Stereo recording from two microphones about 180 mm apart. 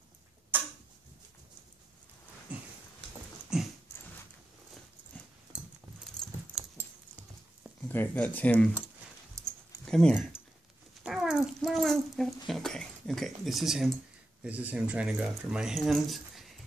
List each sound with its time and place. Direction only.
0.5 s tick-tock: 10° right (ahead or behind)
2.5 s a sound: 10° right (ahead or behind)
3.5 s dog: 5° right (ahead or behind)
5.1 s dog: 10° left (ahead or behind)
5.5 s a sound: 5° right (ahead or behind)
6.5 s dog: centre (ahead or behind)
7.9 s speech: 10° left (ahead or behind)
9.4 s a sound: 15° right (ahead or behind)
9.8 s speech: 5° left (ahead or behind)
11.1 s speech: 5° right (ahead or behind)